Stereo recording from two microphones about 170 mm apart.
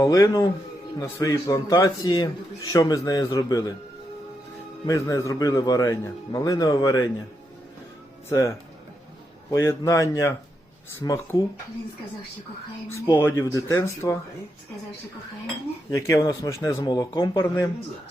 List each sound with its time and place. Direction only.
0.0 s a man's voice: 20° left (ahead or behind)
4.9 s a man's voice: 20° left (ahead or behind)
8.3 s a man's voice: 15° left (ahead or behind)
13.1 s speech: 15° left (ahead or behind)
15.9 s a man's voice: 20° left (ahead or behind)
17.4 s speech: 15° left (ahead or behind)